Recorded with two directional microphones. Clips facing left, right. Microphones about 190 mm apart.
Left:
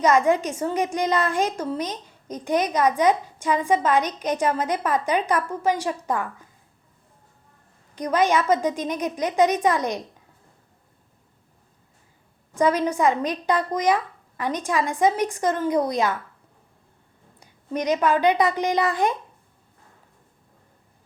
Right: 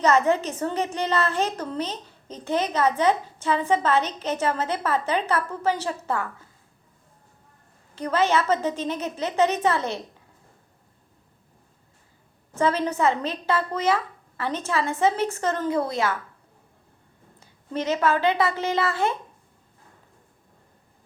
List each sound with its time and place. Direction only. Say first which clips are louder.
0.0 s a woman's voice: left 1 dB; 10° left (ahead or behind)
7.9 s a woman's voice: left 2 dB; 15° left (ahead or behind)
12.5 s a woman's voice: left 2 dB; 15° left (ahead or behind)
17.4 s a woman's voice: left 2 dB; 15° left (ahead or behind)